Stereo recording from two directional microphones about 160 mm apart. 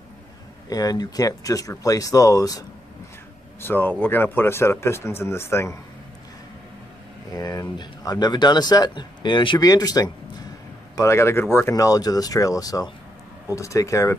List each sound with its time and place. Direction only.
0.7 s speech: 25° left (ahead or behind)
3.6 s speech: 10° left (ahead or behind)
7.3 s speech: 20° left (ahead or behind)